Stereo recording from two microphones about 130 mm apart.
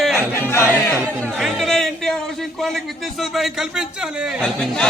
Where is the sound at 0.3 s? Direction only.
20° left (ahead or behind).